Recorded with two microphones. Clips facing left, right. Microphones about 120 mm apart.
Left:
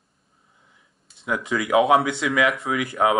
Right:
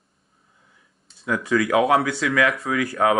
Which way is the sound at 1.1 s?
20° left (ahead or behind).